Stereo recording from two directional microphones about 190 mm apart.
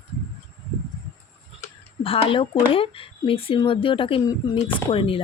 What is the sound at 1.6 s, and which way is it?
Speech, 30° left (ahead or behind).